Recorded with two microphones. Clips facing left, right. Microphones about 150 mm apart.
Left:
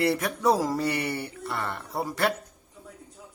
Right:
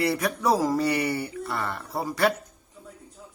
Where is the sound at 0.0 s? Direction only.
Centre (ahead or behind).